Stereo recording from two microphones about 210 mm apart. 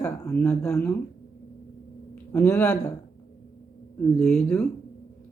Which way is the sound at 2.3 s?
5° left (ahead or behind).